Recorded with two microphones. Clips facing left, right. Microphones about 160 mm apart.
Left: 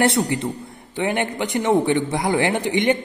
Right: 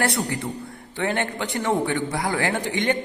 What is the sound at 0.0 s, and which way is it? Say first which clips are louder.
A man's voice: left 5 dB; 20° left (ahead or behind).